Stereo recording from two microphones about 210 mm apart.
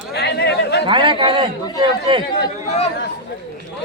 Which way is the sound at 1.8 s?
25° right (ahead or behind).